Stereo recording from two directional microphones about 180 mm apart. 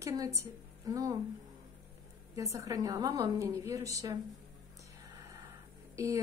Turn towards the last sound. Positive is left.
turn(degrees=-15)  # may be behind; listen again after turning